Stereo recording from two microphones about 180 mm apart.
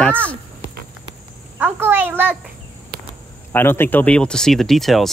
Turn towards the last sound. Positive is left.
turn(degrees=0)  # may be behind; listen again after turning